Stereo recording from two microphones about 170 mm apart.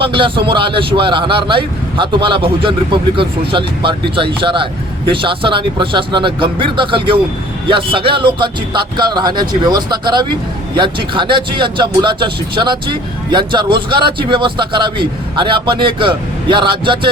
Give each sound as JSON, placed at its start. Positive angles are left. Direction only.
{"t": 0.0, "sound": "speech", "side_deg": -30}